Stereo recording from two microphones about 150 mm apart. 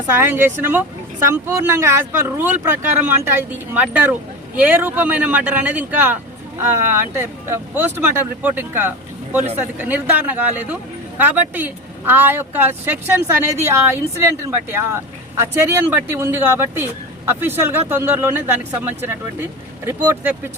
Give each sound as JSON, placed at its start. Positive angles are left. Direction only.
{"t": 0.2, "sound": "speech", "side_deg": -15}
{"t": 7.2, "sound": "speech", "side_deg": -15}